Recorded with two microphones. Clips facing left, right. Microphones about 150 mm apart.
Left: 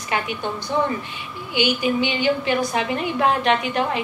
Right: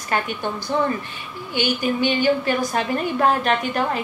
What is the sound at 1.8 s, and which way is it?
A woman's voice, 45° right (ahead or behind).